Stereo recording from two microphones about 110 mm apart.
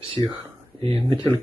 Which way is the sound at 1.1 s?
45° right (ahead or behind).